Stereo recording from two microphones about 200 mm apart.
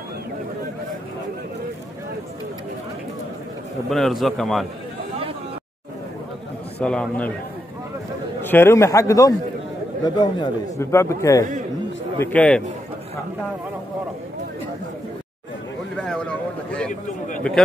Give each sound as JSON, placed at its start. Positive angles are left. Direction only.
{"t": 3.9, "sound": "a man's voice", "side_deg": 0}
{"t": 6.8, "sound": "a man's voice", "side_deg": 5}
{"t": 8.4, "sound": "a man's voice", "side_deg": 10}
{"t": 16.0, "sound": "a sound", "side_deg": 5}